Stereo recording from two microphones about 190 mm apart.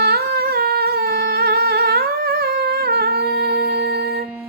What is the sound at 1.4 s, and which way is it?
Music, 55° right (ahead or behind).